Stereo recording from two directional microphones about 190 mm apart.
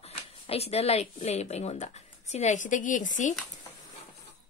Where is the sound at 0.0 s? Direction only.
30° left (ahead or behind).